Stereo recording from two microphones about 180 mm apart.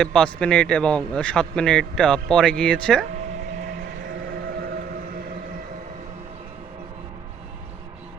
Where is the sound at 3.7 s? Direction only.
70° right (ahead or behind).